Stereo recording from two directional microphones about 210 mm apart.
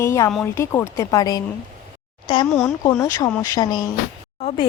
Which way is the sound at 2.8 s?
15° left (ahead or behind).